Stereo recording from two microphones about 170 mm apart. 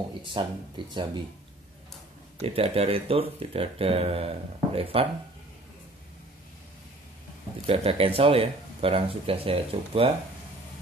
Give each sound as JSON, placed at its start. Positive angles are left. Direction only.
{"t": 0.2, "sound": "speech", "side_deg": -30}
{"t": 2.4, "sound": "speech", "side_deg": -35}
{"t": 7.6, "sound": "speech", "side_deg": -35}